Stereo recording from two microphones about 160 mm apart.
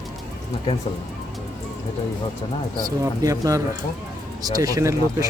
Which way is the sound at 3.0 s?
20° right (ahead or behind).